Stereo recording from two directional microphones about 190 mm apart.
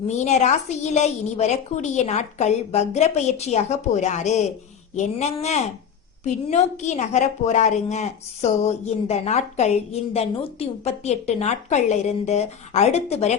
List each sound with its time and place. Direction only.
0.2 s a woman's voice: 40° left (ahead or behind)